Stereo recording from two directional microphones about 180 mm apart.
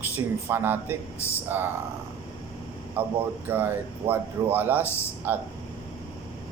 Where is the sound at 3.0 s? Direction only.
10° right (ahead or behind).